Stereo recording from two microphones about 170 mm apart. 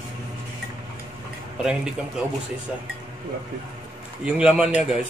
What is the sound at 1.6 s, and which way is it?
Speech, 5° right (ahead or behind).